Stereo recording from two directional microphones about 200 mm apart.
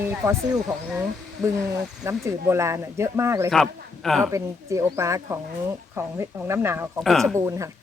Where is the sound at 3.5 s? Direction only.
Centre (ahead or behind).